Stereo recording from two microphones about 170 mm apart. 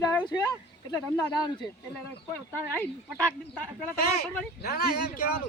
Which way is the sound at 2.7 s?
5° left (ahead or behind).